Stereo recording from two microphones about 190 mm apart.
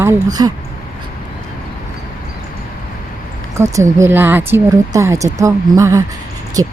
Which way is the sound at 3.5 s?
15° right (ahead or behind).